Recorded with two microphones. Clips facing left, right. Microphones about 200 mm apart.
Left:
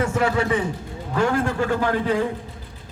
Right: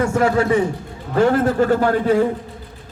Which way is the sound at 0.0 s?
45° right (ahead or behind).